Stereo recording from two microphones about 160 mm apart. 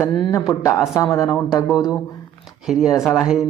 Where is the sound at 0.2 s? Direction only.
20° left (ahead or behind).